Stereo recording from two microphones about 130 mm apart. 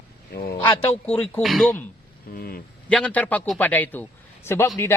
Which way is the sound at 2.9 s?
10° left (ahead or behind).